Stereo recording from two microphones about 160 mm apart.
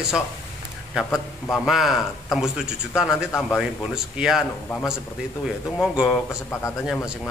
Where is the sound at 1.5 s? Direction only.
Centre (ahead or behind).